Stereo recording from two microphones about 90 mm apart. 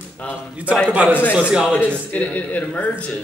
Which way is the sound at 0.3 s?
15° right (ahead or behind).